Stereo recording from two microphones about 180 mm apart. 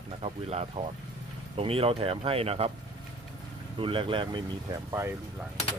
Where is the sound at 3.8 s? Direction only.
30° right (ahead or behind).